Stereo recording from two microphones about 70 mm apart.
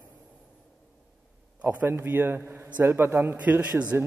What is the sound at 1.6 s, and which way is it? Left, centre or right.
A man's voice, right.